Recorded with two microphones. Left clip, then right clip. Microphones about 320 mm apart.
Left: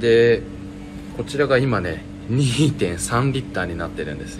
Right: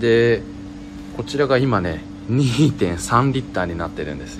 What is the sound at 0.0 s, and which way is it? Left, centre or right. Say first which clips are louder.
A man's voice: left 1 dB; right.